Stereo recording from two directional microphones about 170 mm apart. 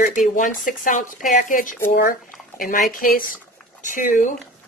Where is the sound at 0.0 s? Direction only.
50° left (ahead or behind).